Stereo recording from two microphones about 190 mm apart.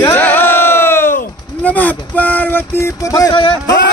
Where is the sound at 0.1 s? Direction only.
10° left (ahead or behind).